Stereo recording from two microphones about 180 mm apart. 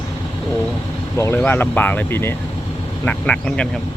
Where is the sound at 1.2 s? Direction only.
10° left (ahead or behind).